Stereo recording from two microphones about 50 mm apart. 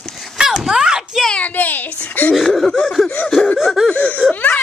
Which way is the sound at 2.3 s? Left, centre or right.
Centre.